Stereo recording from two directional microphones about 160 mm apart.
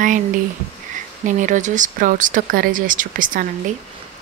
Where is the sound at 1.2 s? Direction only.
50° right (ahead or behind).